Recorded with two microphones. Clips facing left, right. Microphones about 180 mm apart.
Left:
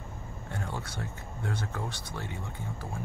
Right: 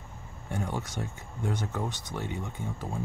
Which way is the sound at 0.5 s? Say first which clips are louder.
Right 4 dB; 15° right (ahead or behind).